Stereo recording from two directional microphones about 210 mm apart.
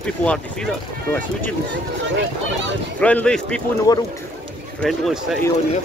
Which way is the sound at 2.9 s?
5° left (ahead or behind).